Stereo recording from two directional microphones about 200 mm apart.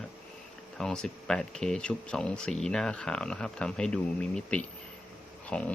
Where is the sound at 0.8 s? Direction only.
5° left (ahead or behind).